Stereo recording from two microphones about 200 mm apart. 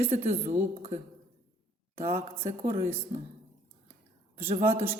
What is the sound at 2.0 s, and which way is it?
Speech, 15° right (ahead or behind).